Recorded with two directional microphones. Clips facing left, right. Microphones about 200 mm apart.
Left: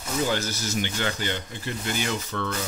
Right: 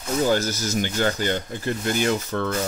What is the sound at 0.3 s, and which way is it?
Speech, 45° right (ahead or behind).